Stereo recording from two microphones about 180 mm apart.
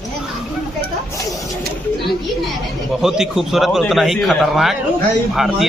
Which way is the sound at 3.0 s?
Centre (ahead or behind).